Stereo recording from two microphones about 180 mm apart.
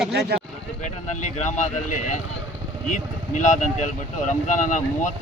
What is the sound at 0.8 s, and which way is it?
Speech, 40° left (ahead or behind).